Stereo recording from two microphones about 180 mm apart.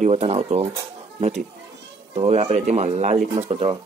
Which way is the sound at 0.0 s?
35° right (ahead or behind).